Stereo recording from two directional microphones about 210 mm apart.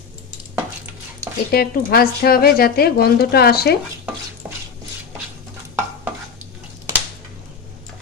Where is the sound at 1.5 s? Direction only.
45° left (ahead or behind).